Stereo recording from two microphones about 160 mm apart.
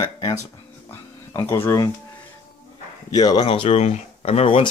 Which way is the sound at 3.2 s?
25° left (ahead or behind).